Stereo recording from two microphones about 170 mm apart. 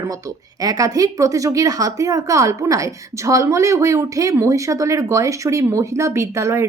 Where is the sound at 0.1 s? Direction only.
20° right (ahead or behind).